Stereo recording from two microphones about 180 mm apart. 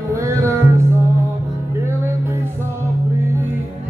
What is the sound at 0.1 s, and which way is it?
Music, 15° right (ahead or behind).